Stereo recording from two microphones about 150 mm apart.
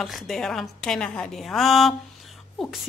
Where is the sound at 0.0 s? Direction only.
Centre (ahead or behind).